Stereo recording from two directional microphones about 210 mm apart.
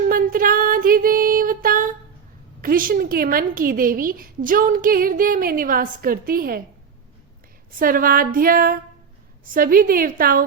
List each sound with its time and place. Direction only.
0.1 s music: 45° right (ahead or behind)
2.6 s a woman's voice: 40° right (ahead or behind)
7.7 s a woman's voice: 40° right (ahead or behind)